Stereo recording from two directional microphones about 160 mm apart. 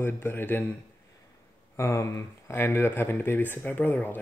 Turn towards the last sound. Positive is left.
turn(degrees=10)  # may be behind; listen again after turning